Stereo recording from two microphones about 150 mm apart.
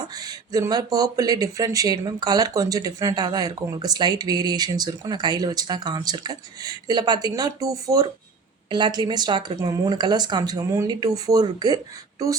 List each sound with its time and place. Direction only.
0.1 s speech: 25° right (ahead or behind)